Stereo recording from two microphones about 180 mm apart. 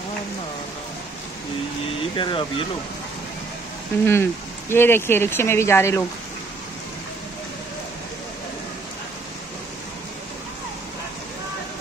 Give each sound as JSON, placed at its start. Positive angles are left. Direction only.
{"t": 2.1, "sound": "speech", "side_deg": 30}
{"t": 4.0, "sound": "speech", "side_deg": 15}